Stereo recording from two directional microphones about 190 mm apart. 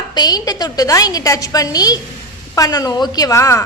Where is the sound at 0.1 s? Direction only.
20° left (ahead or behind).